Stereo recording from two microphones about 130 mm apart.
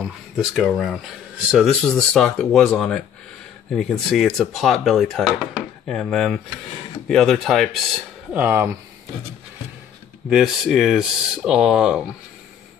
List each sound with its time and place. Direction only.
0.0 s speech: centre (ahead or behind)
8.3 s speech: 15° right (ahead or behind)
10.3 s speech: centre (ahead or behind)